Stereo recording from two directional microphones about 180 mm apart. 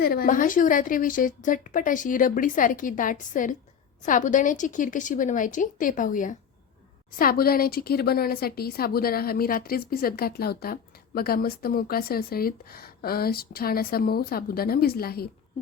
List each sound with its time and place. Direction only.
0.0 s a woman's voice: 55° left (ahead or behind)